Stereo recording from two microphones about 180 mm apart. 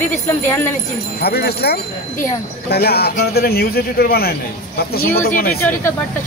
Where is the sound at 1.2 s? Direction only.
60° left (ahead or behind).